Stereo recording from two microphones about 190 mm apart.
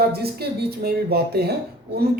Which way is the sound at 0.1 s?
55° right (ahead or behind).